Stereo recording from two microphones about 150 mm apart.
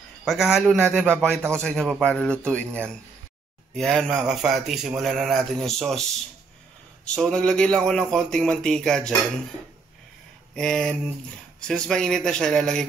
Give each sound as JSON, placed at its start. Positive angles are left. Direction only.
{"t": 0.2, "sound": "speech", "side_deg": 0}
{"t": 7.2, "sound": "speech", "side_deg": 5}
{"t": 10.5, "sound": "speech", "side_deg": 5}